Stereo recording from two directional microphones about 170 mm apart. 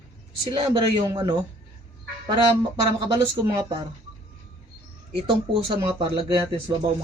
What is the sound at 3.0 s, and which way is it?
Speech, 25° right (ahead or behind).